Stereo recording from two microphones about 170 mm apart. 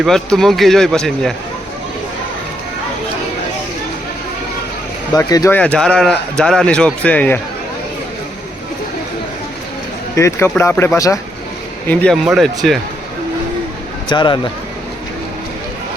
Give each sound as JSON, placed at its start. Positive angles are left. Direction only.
{"t": 0.0, "sound": "a man's voice", "side_deg": 0}
{"t": 5.1, "sound": "speech", "side_deg": 20}
{"t": 5.5, "sound": "a man's voice", "side_deg": 5}
{"t": 10.2, "sound": "speech", "side_deg": 15}
{"t": 11.9, "sound": "a man's voice", "side_deg": 0}
{"t": 14.1, "sound": "speech", "side_deg": 25}